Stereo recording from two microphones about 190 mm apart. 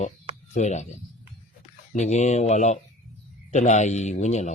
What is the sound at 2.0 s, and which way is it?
Speech, 35° left (ahead or behind).